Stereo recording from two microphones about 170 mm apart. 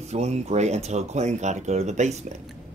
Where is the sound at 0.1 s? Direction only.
40° right (ahead or behind).